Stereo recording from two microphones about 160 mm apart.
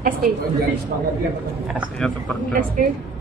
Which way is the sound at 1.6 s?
10° right (ahead or behind).